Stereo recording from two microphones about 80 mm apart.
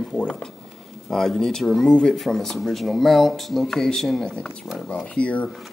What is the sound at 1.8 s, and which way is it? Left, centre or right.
Speech, centre.